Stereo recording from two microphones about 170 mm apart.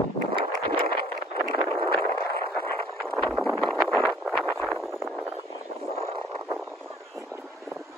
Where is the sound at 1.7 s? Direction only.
10° left (ahead or behind).